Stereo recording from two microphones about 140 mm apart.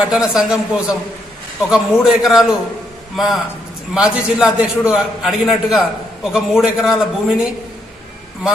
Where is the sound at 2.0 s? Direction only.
5° right (ahead or behind).